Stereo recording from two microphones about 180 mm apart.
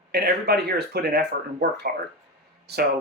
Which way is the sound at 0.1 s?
60° right (ahead or behind).